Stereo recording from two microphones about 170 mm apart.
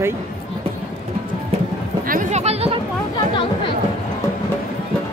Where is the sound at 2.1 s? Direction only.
45° right (ahead or behind).